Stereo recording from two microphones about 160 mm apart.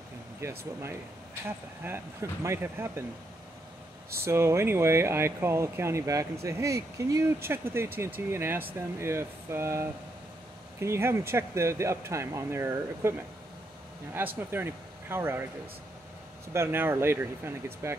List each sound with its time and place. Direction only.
0.4 s speech: 15° right (ahead or behind)
4.2 s speech: 15° right (ahead or behind)
14.2 s speech: 15° right (ahead or behind)
16.5 s speech: 15° right (ahead or behind)